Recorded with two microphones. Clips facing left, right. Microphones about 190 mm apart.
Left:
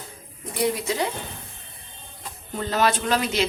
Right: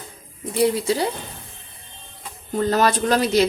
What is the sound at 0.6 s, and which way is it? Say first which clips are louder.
Speech: right 5 dB; 35° right (ahead or behind).